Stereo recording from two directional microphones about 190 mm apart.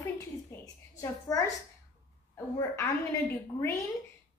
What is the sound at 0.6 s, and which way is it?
Speech, 20° left (ahead or behind).